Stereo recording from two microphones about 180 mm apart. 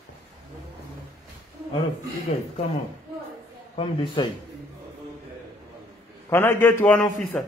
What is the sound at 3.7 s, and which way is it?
Speech, 30° left (ahead or behind).